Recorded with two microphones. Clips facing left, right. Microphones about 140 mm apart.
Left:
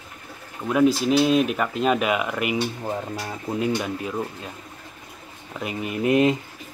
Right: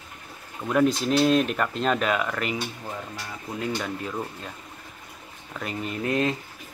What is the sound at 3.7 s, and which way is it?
Speech, 10° left (ahead or behind).